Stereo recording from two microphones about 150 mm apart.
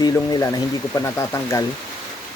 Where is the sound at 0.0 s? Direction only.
25° left (ahead or behind).